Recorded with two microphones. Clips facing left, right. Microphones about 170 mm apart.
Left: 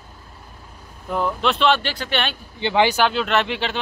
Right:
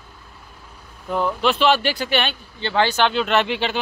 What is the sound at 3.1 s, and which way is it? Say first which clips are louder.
Speech: right 1 dB; centre (ahead or behind).